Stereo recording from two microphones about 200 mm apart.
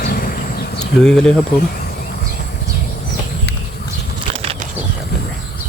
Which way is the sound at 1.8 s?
50° left (ahead or behind).